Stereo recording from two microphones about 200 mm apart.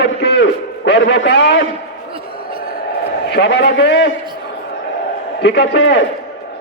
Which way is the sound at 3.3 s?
60° left (ahead or behind).